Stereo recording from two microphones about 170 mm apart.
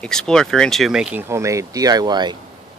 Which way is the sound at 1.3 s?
15° right (ahead or behind).